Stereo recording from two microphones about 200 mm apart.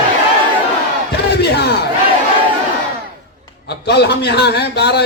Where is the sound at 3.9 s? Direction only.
55° left (ahead or behind).